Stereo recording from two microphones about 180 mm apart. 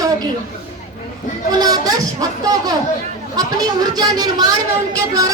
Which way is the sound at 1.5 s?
20° right (ahead or behind).